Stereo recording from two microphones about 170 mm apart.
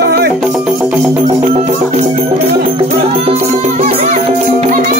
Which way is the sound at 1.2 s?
40° right (ahead or behind).